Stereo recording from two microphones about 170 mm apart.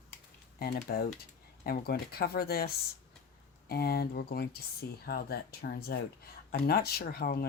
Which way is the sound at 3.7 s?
65° left (ahead or behind).